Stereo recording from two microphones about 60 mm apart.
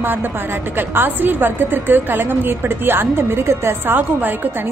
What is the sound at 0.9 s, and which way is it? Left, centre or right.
A woman's voice, right.